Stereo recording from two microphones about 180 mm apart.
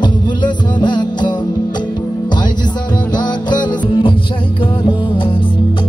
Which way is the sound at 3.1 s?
25° left (ahead or behind).